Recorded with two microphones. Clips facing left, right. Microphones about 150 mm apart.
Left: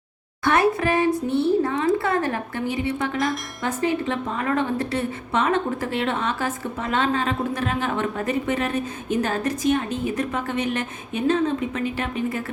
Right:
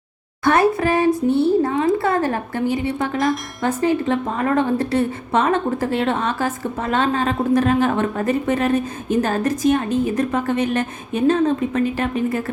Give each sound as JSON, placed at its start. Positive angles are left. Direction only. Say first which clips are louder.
{"t": 0.4, "sound": "a woman's voice", "louder": "right 3 dB", "side_deg": -35}